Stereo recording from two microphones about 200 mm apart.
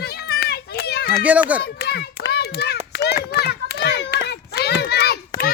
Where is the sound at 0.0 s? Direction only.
50° left (ahead or behind).